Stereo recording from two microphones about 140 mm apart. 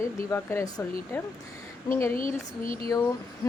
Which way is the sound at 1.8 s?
20° left (ahead or behind).